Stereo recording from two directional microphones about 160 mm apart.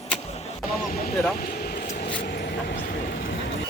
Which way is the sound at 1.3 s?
70° left (ahead or behind).